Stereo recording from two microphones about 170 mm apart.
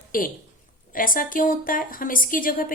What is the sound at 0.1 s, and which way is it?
A woman's voice, 55° left (ahead or behind).